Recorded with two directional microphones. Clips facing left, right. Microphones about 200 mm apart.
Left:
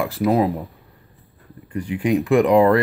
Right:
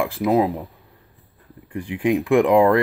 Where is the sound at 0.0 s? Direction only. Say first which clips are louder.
Even; 10° right (ahead or behind).